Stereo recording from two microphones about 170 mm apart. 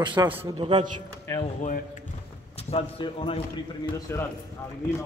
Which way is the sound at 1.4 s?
45° left (ahead or behind).